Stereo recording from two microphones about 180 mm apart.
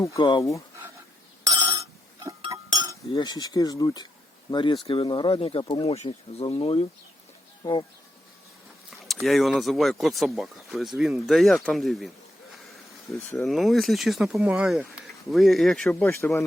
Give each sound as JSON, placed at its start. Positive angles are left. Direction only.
{"t": 0.0, "sound": "speech", "side_deg": 20}
{"t": 1.5, "sound": "telephone bell ringing", "side_deg": -20}
{"t": 2.4, "sound": "chink", "side_deg": -20}
{"t": 3.1, "sound": "speech", "side_deg": 25}
{"t": 9.2, "sound": "speech", "side_deg": 0}
{"t": 13.1, "sound": "speech", "side_deg": 15}
{"t": 13.4, "sound": "speech", "side_deg": 0}